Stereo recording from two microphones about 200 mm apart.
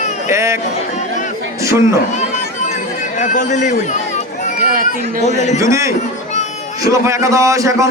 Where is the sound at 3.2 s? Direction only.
35° left (ahead or behind).